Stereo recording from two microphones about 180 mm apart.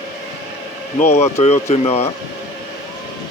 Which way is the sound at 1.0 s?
35° left (ahead or behind).